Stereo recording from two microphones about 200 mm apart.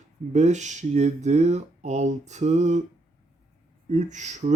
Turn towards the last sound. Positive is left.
turn(degrees=-35)  # may be behind; listen again after turning